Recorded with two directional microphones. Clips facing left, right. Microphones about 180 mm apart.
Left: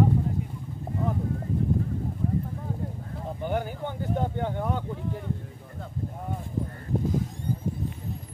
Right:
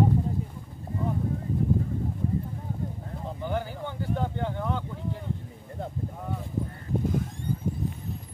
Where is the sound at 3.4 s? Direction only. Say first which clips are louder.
Left 2 dB; 15° left (ahead or behind).